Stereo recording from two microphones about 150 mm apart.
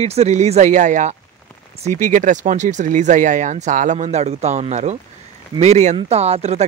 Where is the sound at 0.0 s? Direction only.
45° right (ahead or behind).